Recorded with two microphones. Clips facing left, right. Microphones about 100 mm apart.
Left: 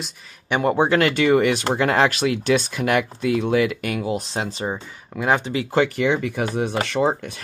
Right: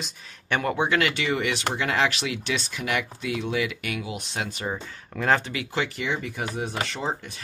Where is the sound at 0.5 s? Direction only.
20° left (ahead or behind).